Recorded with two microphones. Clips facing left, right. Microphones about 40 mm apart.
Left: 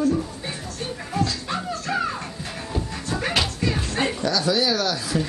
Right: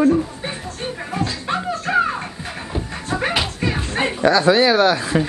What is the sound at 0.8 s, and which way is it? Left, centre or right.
Music, right.